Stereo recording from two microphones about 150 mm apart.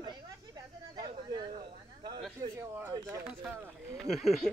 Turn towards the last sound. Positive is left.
turn(degrees=0)  # may be behind; listen again after turning